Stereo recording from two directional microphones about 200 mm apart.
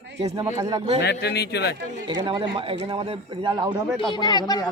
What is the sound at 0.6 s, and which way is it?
Speech, 20° right (ahead or behind).